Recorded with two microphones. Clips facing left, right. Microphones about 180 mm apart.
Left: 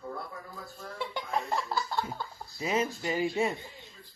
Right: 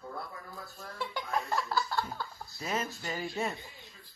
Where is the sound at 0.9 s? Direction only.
20° left (ahead or behind).